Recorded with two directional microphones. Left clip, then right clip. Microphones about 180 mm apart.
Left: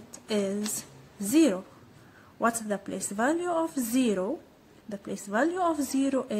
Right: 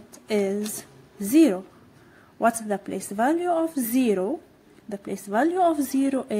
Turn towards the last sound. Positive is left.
turn(degrees=-15)  # may be behind; listen again after turning